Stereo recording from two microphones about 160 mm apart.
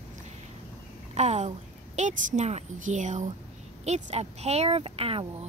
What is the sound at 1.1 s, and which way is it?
A woman's voice, 45° right (ahead or behind).